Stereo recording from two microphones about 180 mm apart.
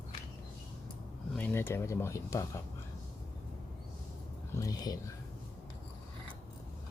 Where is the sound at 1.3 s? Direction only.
10° left (ahead or behind).